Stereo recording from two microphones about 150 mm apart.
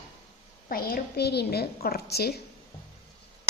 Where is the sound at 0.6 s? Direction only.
75° left (ahead or behind).